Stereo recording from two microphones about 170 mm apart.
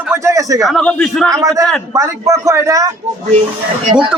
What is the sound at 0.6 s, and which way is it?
Speech, centre (ahead or behind).